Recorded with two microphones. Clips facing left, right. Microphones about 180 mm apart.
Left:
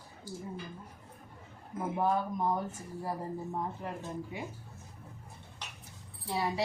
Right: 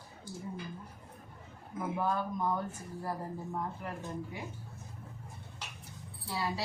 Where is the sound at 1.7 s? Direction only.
25° left (ahead or behind).